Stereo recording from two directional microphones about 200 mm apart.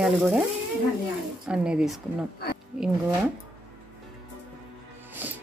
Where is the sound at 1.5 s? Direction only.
5° right (ahead or behind).